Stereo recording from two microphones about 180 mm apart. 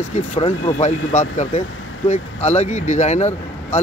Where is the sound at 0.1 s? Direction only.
35° left (ahead or behind).